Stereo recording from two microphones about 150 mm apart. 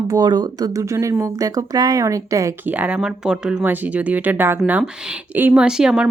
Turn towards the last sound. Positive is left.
turn(degrees=-5)  # may be behind; listen again after turning